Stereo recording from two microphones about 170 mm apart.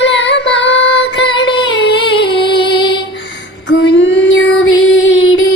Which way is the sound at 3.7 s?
90° left.